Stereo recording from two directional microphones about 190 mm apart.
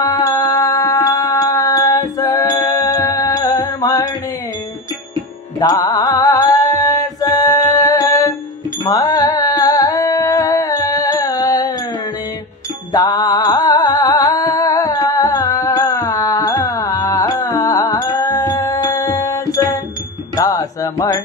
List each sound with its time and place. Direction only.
0.0 s a sound: 20° left (ahead or behind)
5.6 s music: 20° left (ahead or behind)
12.9 s music: 20° left (ahead or behind)